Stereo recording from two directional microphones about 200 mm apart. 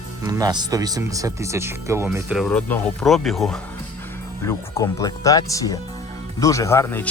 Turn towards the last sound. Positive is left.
turn(degrees=10)  # may be behind; listen again after turning